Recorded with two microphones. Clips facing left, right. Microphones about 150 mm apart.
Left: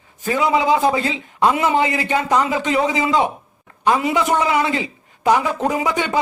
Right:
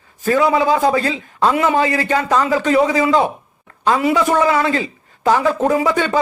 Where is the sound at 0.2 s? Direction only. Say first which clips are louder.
Right 3 dB; 20° left (ahead or behind).